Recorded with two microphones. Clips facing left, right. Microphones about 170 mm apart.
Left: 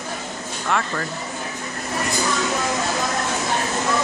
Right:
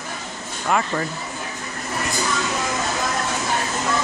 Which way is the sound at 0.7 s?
15° right (ahead or behind).